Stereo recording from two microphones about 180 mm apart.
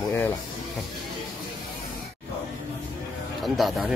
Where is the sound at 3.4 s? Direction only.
Centre (ahead or behind).